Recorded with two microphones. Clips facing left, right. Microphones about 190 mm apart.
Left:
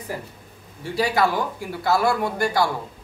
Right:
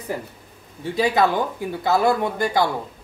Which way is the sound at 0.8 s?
20° right (ahead or behind).